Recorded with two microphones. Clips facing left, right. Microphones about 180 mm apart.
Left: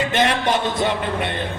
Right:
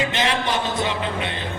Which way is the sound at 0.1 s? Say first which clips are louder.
Left 4 dB; 55° left (ahead or behind).